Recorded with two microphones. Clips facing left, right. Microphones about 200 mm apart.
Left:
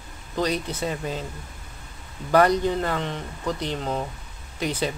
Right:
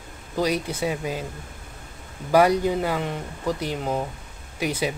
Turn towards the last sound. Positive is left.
turn(degrees=-10)  # may be behind; listen again after turning